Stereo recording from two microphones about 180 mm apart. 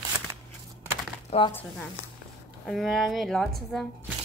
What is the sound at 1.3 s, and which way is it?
Speech, 35° left (ahead or behind).